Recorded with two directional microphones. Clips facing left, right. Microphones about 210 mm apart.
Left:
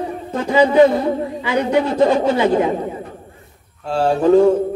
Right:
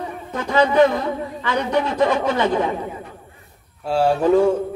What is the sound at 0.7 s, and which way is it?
A man's voice, 30° left (ahead or behind).